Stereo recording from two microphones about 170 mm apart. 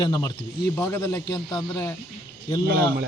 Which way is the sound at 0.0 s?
20° left (ahead or behind).